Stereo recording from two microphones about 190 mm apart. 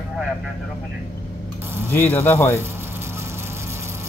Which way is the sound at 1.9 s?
10° left (ahead or behind).